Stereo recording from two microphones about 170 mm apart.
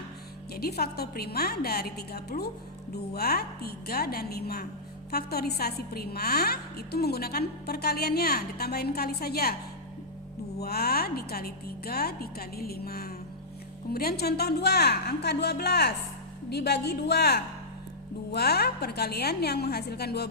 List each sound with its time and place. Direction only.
0.5 s a woman's voice: 65° left (ahead or behind)
10.6 s a woman's voice: 65° left (ahead or behind)